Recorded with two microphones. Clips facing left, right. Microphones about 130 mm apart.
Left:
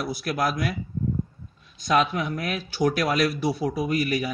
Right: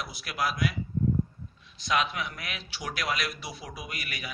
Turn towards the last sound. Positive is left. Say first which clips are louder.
# left 16 dB
turn(degrees=35)  # may be behind; listen again after turning